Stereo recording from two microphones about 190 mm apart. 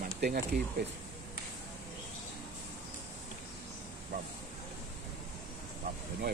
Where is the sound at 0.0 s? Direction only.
50° right (ahead or behind).